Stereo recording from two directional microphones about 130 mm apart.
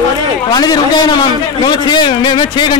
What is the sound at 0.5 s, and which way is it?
A man's voice, 30° left (ahead or behind).